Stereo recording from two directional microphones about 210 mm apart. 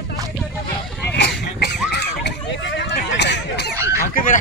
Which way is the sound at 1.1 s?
55° left (ahead or behind).